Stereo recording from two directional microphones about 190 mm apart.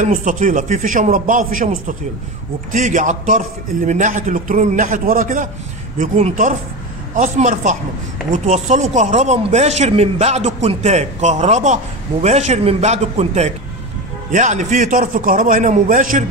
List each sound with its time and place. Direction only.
0.0 s a man's voice: 45° right (ahead or behind)